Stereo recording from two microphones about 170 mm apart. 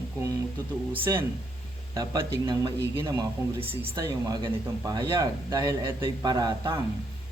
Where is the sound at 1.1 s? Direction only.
20° right (ahead or behind).